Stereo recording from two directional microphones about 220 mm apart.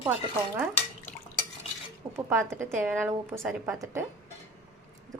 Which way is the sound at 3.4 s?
Centre (ahead or behind).